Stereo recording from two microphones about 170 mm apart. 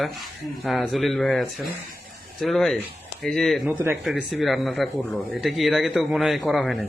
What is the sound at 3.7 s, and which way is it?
Speech, 10° right (ahead or behind).